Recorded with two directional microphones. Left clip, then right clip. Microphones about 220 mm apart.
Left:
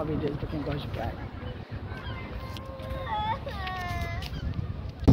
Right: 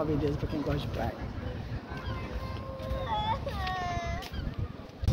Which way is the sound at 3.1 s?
10° left (ahead or behind).